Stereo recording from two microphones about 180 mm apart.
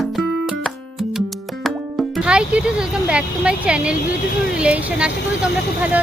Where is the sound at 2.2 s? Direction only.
5° right (ahead or behind).